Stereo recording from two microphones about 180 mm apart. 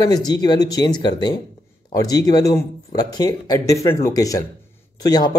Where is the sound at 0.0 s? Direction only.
20° left (ahead or behind).